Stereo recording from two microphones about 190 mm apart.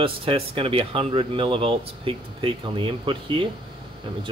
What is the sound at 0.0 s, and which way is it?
Speech, 30° right (ahead or behind).